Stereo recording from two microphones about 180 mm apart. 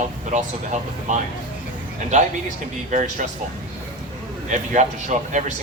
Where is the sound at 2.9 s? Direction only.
45° right (ahead or behind).